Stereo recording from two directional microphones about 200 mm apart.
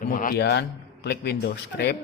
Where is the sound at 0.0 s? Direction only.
45° left (ahead or behind).